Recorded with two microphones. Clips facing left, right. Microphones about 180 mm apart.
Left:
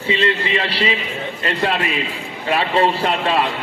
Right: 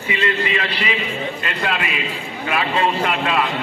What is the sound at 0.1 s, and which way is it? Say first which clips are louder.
A man's voice: left 2 dB; 25° left (ahead or behind).